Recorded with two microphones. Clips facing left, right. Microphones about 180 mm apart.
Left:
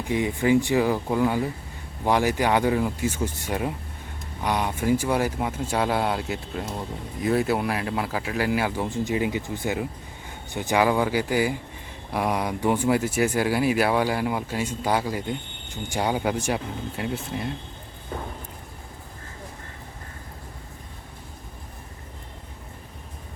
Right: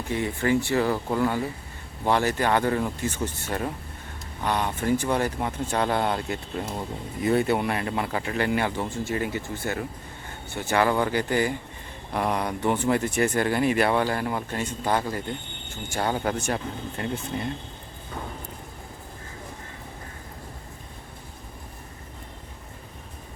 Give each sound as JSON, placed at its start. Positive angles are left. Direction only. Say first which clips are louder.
{"t": 0.1, "sound": "speech", "louder": "left 3 dB", "side_deg": 15}